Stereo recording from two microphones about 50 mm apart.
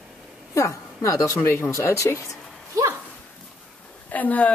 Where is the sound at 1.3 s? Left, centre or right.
Left.